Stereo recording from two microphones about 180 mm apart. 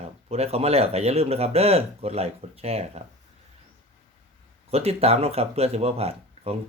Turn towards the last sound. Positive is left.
turn(degrees=-35)  # may be behind; listen again after turning